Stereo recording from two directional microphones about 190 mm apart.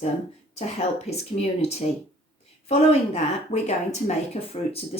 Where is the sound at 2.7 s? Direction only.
35° left (ahead or behind).